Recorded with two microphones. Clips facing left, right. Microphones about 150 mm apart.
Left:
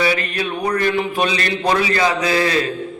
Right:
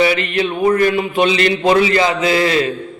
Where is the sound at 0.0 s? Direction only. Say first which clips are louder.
Right 4 dB; 20° right (ahead or behind).